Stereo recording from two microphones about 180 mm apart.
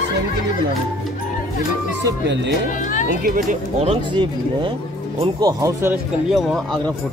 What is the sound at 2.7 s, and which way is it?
Speech, 45° left (ahead or behind).